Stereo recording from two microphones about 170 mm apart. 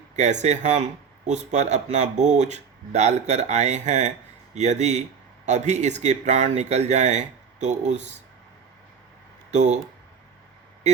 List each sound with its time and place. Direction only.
0.2 s speech: 45° right (ahead or behind)
9.5 s speech: 45° right (ahead or behind)